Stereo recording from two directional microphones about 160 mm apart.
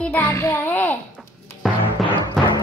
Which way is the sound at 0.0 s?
10° left (ahead or behind).